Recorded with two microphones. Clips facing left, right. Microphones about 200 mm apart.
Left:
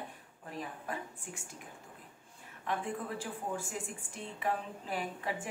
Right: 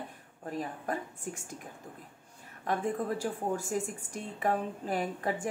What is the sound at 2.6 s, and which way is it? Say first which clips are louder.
Speech: right 5 dB; 40° right (ahead or behind).